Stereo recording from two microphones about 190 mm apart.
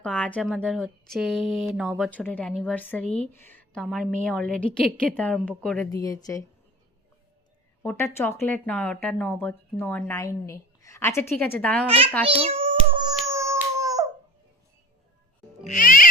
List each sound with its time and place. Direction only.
0.0 s speech: 5° left (ahead or behind)
5.9 s speech: 20° left (ahead or behind)
7.8 s speech: 10° left (ahead or behind)
11.9 s a child's voice: 30° right (ahead or behind)
12.3 s a sound: 30° right (ahead or behind)
15.6 s speech: 45° left (ahead or behind)